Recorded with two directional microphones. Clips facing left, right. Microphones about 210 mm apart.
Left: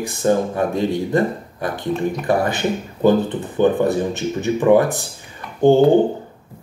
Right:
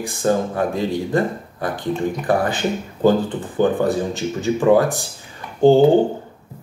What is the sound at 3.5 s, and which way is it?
Speech, 20° left (ahead or behind).